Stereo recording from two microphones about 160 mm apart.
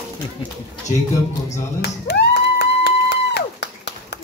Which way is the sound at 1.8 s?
90° left.